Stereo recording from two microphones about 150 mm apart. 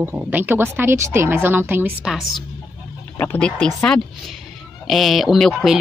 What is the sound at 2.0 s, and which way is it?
Speech, centre (ahead or behind).